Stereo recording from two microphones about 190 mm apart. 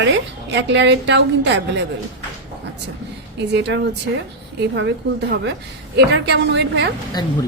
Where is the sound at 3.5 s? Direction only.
65° right (ahead or behind).